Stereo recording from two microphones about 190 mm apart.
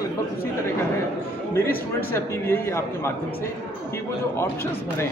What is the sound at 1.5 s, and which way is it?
A man's voice, 10° left (ahead or behind).